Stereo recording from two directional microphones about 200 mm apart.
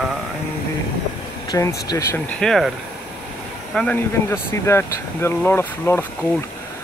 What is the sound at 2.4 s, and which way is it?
Speech, centre (ahead or behind).